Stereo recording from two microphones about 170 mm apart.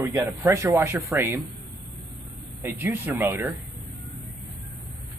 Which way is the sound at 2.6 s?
15° right (ahead or behind).